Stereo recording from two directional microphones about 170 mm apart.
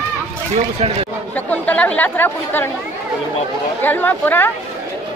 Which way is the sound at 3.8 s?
10° left (ahead or behind).